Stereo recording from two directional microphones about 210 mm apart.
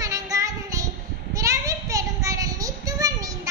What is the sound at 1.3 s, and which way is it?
Child singing, 15° right (ahead or behind).